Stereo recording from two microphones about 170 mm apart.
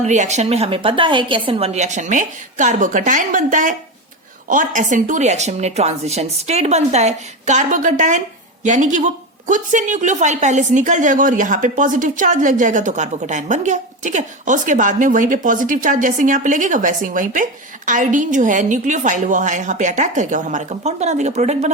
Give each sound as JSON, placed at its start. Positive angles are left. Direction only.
{"t": 0.0, "sound": "a woman's voice", "side_deg": -45}